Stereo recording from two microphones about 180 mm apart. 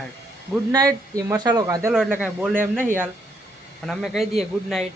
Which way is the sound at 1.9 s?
5° right (ahead or behind).